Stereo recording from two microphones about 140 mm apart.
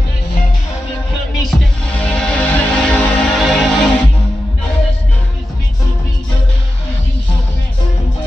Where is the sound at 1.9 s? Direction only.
10° left (ahead or behind).